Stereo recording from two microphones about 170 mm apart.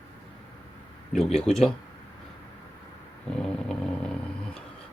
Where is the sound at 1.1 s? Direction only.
Centre (ahead or behind).